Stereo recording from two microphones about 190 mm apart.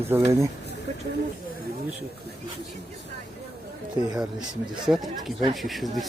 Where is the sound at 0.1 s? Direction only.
15° right (ahead or behind).